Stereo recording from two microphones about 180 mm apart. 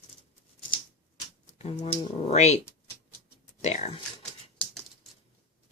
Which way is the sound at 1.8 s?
35° left (ahead or behind).